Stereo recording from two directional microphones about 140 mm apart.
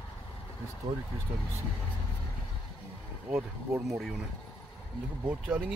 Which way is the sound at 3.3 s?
15° right (ahead or behind).